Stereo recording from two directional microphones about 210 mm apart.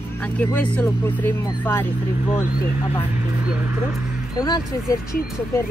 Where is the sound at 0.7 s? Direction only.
5° left (ahead or behind).